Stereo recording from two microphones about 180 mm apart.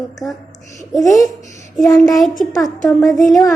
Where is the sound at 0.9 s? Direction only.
20° left (ahead or behind).